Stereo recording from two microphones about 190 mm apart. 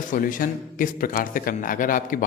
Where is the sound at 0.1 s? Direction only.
45° left (ahead or behind).